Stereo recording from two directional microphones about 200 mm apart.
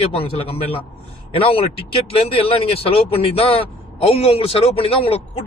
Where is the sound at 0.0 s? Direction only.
30° left (ahead or behind).